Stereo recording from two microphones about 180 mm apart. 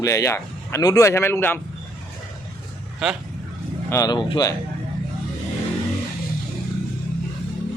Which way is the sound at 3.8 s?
20° left (ahead or behind).